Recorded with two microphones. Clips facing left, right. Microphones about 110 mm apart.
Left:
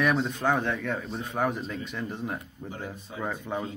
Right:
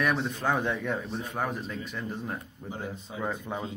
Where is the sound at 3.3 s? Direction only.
10° right (ahead or behind).